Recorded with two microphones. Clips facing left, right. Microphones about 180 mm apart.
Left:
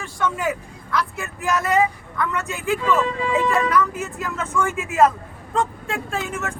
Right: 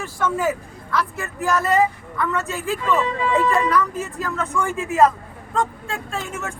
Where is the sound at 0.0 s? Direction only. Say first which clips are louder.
Right 2 dB; 5° right (ahead or behind).